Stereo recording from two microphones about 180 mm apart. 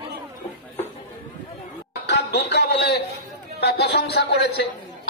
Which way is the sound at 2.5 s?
65° left (ahead or behind).